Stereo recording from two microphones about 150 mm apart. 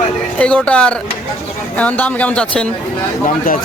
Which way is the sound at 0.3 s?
5° left (ahead or behind).